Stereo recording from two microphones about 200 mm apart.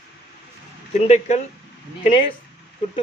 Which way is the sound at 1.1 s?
35° left (ahead or behind).